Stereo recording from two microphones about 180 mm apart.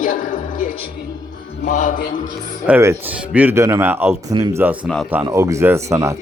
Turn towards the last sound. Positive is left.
turn(degrees=-15)  # may be behind; listen again after turning